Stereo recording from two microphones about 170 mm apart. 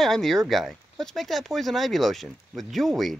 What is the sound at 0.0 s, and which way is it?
Speech, centre (ahead or behind).